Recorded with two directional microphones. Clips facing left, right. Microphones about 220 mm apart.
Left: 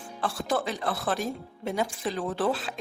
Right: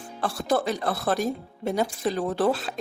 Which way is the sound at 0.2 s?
40° right (ahead or behind).